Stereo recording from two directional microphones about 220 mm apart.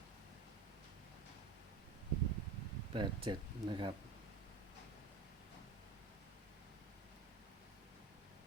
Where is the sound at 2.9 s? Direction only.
20° right (ahead or behind).